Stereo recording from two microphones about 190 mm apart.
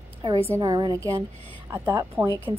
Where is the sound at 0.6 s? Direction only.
20° right (ahead or behind).